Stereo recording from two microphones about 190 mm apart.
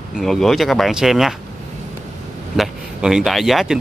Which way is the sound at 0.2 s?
Centre (ahead or behind).